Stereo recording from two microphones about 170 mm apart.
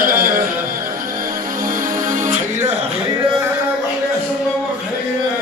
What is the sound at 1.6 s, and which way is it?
Music, 50° right (ahead or behind).